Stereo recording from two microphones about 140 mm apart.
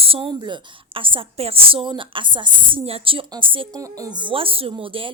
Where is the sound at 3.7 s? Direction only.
25° right (ahead or behind).